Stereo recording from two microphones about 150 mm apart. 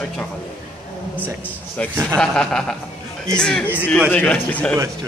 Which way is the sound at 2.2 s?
5° left (ahead or behind).